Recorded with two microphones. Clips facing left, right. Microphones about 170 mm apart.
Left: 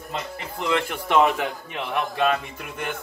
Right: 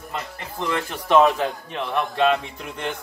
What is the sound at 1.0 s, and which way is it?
A man's voice, 10° left (ahead or behind).